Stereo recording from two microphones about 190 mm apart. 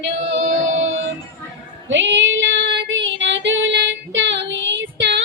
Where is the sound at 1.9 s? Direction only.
75° right (ahead or behind).